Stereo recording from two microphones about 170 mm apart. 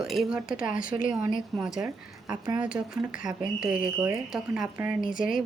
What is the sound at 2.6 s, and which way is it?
A woman's voice, 5° right (ahead or behind).